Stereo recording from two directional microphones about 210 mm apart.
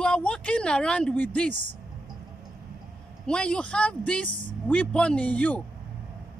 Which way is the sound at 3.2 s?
5° left (ahead or behind).